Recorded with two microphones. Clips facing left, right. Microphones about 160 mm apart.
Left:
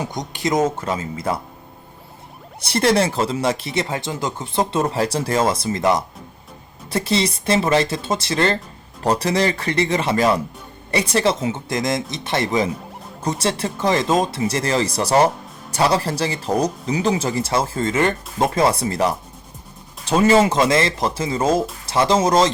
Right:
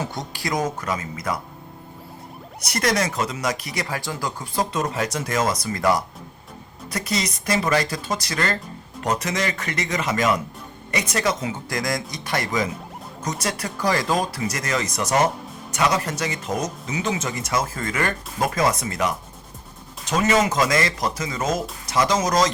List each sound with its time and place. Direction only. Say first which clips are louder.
0.0 s speech: left 4 dB; 15° left (ahead or behind)
2.6 s speech: left 5 dB; 30° left (ahead or behind)